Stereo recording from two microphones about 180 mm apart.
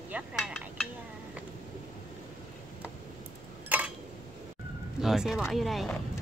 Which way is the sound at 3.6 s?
10° right (ahead or behind).